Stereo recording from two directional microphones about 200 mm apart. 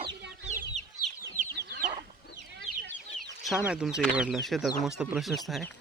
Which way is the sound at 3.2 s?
Centre (ahead or behind).